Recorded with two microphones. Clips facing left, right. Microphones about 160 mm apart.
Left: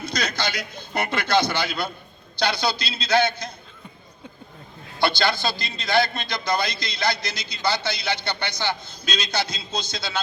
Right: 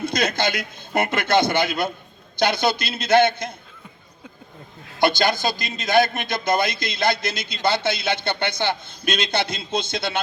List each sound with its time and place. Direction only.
0.0 s a man's voice: 50° right (ahead or behind)
4.9 s a man's voice: 45° right (ahead or behind)